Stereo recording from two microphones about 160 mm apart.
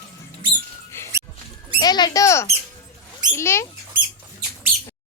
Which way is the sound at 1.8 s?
25° left (ahead or behind).